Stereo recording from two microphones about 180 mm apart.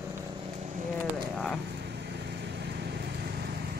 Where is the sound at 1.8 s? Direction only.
70° right (ahead or behind).